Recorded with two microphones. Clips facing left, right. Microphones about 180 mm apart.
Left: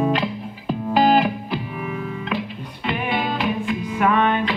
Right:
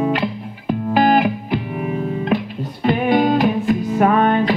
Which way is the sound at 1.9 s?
40° right (ahead or behind).